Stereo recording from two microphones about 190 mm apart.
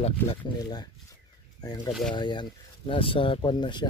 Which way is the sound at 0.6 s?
20° left (ahead or behind).